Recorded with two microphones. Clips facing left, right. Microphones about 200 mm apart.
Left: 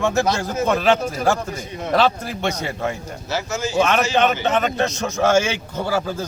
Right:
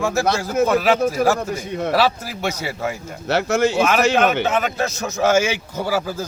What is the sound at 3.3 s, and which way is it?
Speech, 65° right (ahead or behind).